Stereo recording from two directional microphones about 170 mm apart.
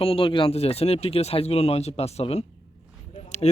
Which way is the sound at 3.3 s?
40° left (ahead or behind).